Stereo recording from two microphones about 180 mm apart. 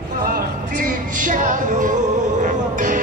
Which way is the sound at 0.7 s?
45° right (ahead or behind).